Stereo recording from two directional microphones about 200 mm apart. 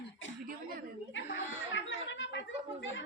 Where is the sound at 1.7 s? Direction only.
65° left (ahead or behind).